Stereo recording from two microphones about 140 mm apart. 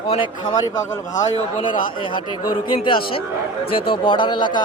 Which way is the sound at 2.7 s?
40° left (ahead or behind).